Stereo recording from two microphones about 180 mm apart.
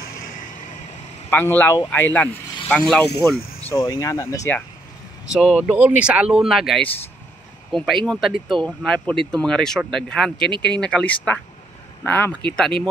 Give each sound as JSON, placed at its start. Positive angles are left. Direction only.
{"t": 1.3, "sound": "speech", "side_deg": 10}
{"t": 3.7, "sound": "speech", "side_deg": 15}
{"t": 5.3, "sound": "speech", "side_deg": -5}